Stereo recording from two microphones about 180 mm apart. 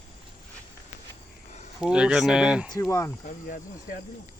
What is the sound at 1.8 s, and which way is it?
Speech, 5° right (ahead or behind).